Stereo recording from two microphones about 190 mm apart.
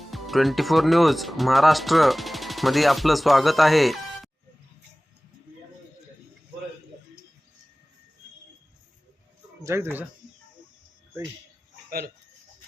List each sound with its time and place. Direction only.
0.0 s speech: centre (ahead or behind)
9.6 s speech: 15° right (ahead or behind)
11.9 s speech: 50° right (ahead or behind)